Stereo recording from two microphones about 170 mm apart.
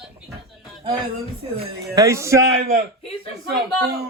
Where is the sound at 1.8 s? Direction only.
20° right (ahead or behind).